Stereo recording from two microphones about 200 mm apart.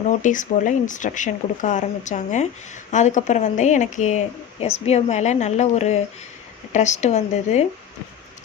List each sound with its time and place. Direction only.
0.1 s speech: 40° left (ahead or behind)